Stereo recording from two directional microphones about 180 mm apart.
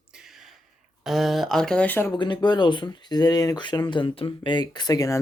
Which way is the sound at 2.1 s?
25° left (ahead or behind).